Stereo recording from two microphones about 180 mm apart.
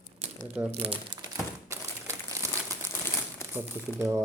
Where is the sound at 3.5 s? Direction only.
15° right (ahead or behind).